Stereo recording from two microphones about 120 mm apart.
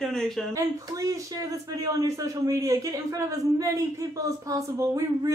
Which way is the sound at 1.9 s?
30° right (ahead or behind).